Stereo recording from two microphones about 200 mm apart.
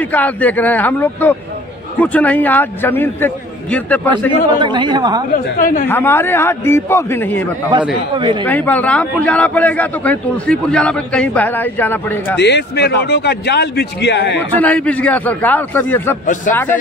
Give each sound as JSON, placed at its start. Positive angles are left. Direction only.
{"t": 0.0, "sound": "a man's voice", "side_deg": 10}
{"t": 4.6, "sound": "speech", "side_deg": -25}
{"t": 5.3, "sound": "a woman's voice", "side_deg": 40}
{"t": 5.9, "sound": "a man's voice", "side_deg": 10}
{"t": 8.2, "sound": "speech", "side_deg": -25}
{"t": 8.5, "sound": "a man's voice", "side_deg": 10}
{"t": 12.4, "sound": "a man's voice", "side_deg": 60}
{"t": 14.5, "sound": "a man's voice", "side_deg": 10}